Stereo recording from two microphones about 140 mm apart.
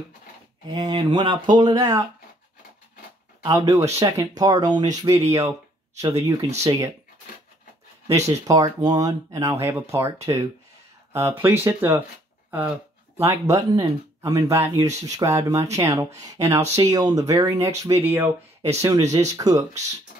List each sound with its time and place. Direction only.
0.7 s speech: 30° right (ahead or behind)
3.4 s speech: 25° right (ahead or behind)
8.1 s speech: 25° right (ahead or behind)
11.4 s speech: 15° right (ahead or behind)
12.4 s a sound: 10° right (ahead or behind)
13.2 s speech: 20° right (ahead or behind)